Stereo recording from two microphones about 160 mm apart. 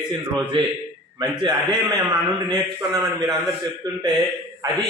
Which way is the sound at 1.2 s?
25° right (ahead or behind).